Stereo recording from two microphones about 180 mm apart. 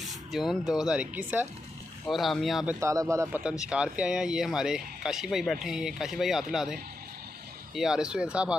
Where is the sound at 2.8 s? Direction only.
15° right (ahead or behind).